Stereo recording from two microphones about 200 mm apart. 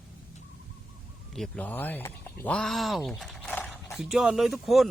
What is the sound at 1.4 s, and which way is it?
Speech, 5° left (ahead or behind).